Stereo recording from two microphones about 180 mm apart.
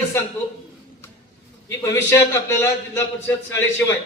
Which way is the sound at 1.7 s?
15° left (ahead or behind).